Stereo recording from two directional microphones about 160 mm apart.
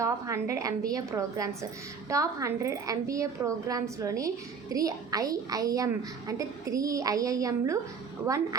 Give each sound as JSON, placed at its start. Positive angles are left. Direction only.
{"t": 0.0, "sound": "a woman's voice", "side_deg": -20}